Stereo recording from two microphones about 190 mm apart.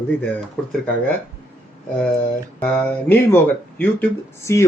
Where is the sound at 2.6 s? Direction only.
5° left (ahead or behind).